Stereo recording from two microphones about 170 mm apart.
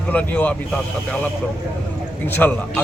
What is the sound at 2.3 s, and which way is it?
Speech, 10° left (ahead or behind).